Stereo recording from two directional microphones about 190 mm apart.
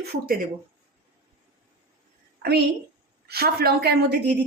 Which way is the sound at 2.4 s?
55° right (ahead or behind).